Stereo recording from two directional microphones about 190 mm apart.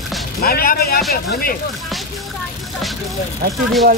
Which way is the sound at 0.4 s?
55° left (ahead or behind).